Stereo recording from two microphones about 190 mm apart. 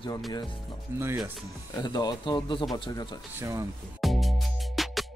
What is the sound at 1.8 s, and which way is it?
Speech, 20° left (ahead or behind).